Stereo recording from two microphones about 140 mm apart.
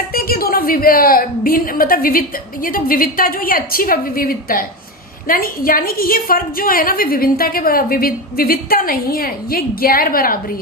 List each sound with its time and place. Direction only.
0.1 s a woman's voice: 90° left